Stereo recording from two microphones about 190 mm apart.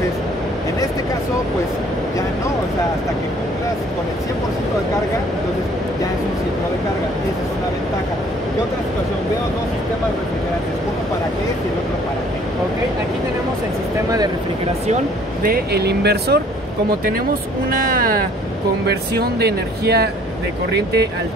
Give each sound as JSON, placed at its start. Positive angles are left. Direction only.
{"t": 15.4, "sound": "speech", "side_deg": -55}
{"t": 17.6, "sound": "speech", "side_deg": -50}